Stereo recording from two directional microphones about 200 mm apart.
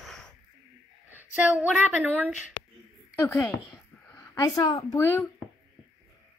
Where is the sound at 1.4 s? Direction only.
10° right (ahead or behind).